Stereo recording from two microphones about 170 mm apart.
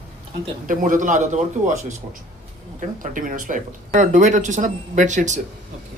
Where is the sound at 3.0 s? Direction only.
50° right (ahead or behind).